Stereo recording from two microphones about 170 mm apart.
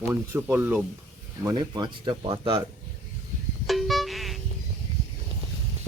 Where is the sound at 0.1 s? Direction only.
10° right (ahead or behind).